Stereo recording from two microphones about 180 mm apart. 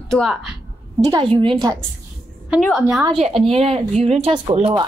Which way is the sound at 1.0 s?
25° right (ahead or behind).